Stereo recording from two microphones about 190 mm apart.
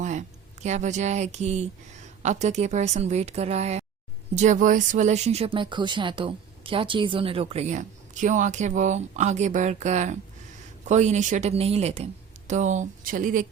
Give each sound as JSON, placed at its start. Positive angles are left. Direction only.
{"t": 0.0, "sound": "speech", "side_deg": -40}